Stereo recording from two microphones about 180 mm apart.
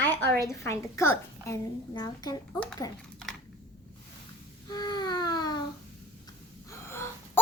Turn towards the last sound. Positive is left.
turn(degrees=15)  # may be behind; listen again after turning